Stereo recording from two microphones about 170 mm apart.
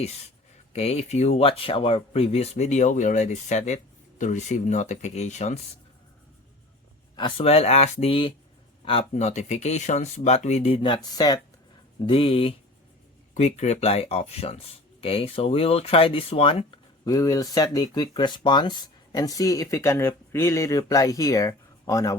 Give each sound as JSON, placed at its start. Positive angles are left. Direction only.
{"t": 0.7, "sound": "speech", "side_deg": 40}
{"t": 7.2, "sound": "speech", "side_deg": 30}